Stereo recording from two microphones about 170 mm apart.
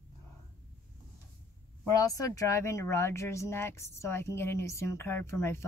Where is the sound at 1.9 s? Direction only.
20° left (ahead or behind).